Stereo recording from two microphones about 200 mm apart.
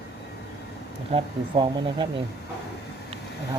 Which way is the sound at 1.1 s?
25° right (ahead or behind).